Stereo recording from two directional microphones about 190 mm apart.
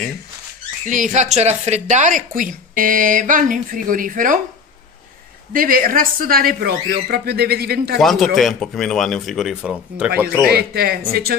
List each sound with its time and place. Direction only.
0.8 s a woman's voice: 40° right (ahead or behind)
5.5 s a woman's voice: 45° right (ahead or behind)
8.0 s speech: centre (ahead or behind)
10.5 s speech: 55° right (ahead or behind)